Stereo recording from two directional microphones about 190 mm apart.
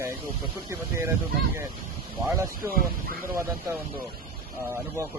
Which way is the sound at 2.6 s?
50° right (ahead or behind).